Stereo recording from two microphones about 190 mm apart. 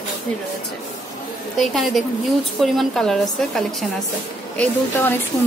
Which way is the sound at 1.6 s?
Centre (ahead or behind).